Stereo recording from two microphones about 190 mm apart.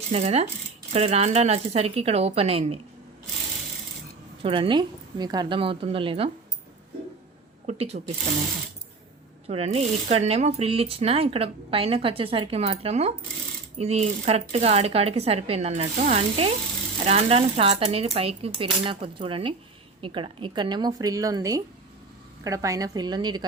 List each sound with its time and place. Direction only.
0.1 s speech: 35° right (ahead or behind)
4.4 s a woman's voice: 30° right (ahead or behind)
7.7 s speech: 35° right (ahead or behind)
9.5 s a woman's voice: 35° right (ahead or behind)